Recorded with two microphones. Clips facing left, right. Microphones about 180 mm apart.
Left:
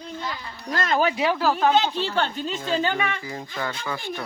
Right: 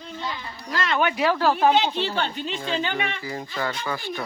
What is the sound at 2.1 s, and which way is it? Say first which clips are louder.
Speech: left 2 dB; 45° left (ahead or behind).